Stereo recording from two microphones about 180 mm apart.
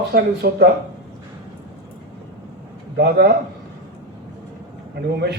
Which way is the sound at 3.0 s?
65° right (ahead or behind).